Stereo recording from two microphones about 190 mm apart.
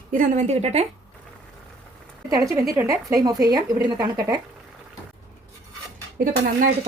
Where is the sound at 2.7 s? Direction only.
15° right (ahead or behind).